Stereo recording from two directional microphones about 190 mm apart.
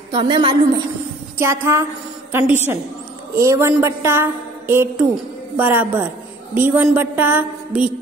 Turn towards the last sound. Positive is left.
turn(degrees=-10)  # may be behind; listen again after turning